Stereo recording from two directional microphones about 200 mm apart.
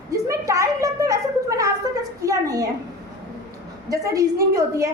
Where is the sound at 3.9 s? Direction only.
15° right (ahead or behind).